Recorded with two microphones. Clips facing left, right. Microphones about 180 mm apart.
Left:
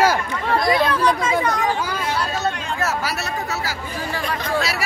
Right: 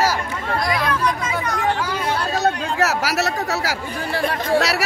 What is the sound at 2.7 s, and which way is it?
Speech, 85° right.